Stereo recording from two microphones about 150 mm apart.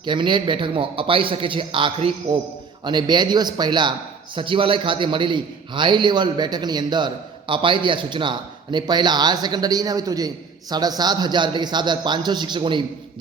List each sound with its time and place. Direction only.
0.0 s a man's voice: 30° right (ahead or behind)